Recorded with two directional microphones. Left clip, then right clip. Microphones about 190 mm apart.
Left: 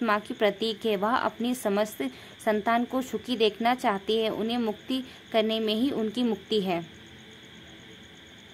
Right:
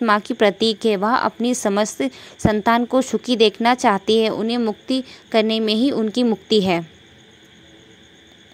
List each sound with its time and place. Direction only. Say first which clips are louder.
0.0 s a woman's voice: right 9 dB; 35° right (ahead or behind)
4.4 s a woman's voice: right 7 dB; 20° right (ahead or behind)